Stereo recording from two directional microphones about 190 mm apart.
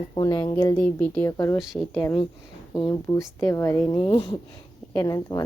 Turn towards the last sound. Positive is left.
turn(degrees=15)  # may be behind; listen again after turning